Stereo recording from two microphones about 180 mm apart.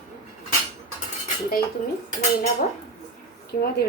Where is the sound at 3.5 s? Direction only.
50° left (ahead or behind).